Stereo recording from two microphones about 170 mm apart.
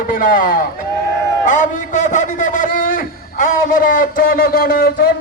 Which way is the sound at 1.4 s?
50° left (ahead or behind).